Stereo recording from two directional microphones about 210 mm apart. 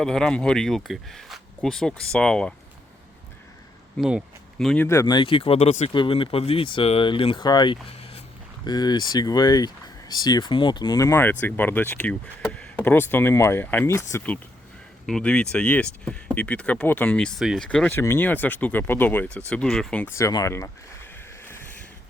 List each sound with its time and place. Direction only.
0.0 s speech: 5° left (ahead or behind)
3.9 s speech: centre (ahead or behind)